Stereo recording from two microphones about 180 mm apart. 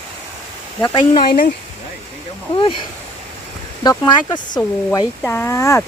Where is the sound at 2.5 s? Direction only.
30° left (ahead or behind).